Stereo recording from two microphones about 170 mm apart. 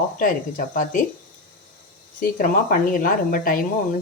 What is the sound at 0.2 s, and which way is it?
Speech, 55° left (ahead or behind).